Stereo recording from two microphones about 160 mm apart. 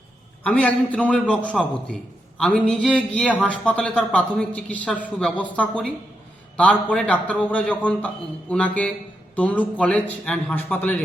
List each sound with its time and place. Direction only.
0.4 s speech: 10° left (ahead or behind)